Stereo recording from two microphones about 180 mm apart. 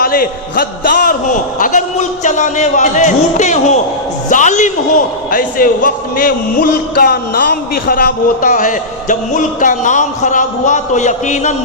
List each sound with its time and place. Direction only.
0.0 s a man's voice: 55° left (ahead or behind)